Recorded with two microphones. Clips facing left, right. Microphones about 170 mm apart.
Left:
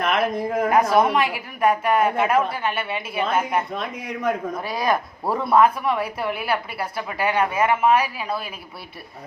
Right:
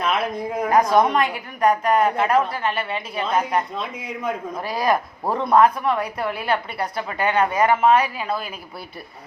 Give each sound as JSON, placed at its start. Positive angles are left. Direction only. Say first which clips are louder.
{"t": 0.0, "sound": "a woman's voice", "louder": "left 2 dB", "side_deg": 55}
{"t": 0.7, "sound": "a woman's voice", "louder": "right 2 dB", "side_deg": 5}
{"t": 3.9, "sound": "a woman's voice", "louder": "left 4 dB", "side_deg": 55}
{"t": 4.6, "sound": "a woman's voice", "louder": "right 3 dB", "side_deg": 0}